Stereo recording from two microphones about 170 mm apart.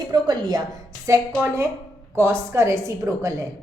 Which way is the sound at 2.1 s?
15° right (ahead or behind).